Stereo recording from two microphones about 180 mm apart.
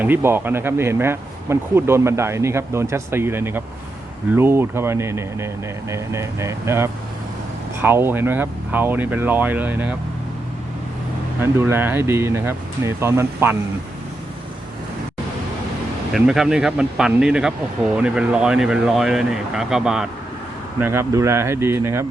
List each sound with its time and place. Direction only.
0.0 s speech: 10° right (ahead or behind)
11.3 s speech: 10° right (ahead or behind)
16.1 s speech: 5° right (ahead or behind)